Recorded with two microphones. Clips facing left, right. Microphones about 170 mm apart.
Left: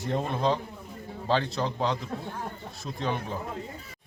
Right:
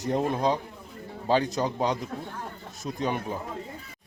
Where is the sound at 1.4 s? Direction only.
45° right (ahead or behind).